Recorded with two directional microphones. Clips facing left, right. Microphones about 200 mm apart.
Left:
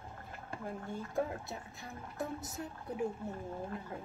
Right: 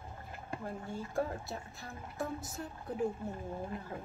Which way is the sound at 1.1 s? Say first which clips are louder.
Right 1 dB; 20° left (ahead or behind).